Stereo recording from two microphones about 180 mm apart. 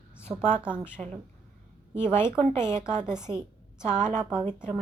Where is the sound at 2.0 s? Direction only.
15° left (ahead or behind).